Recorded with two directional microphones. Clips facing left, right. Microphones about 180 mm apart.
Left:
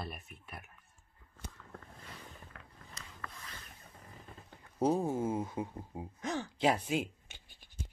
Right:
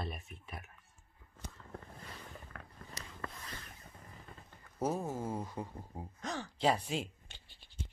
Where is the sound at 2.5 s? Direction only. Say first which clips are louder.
Right 4 dB; 50° right (ahead or behind).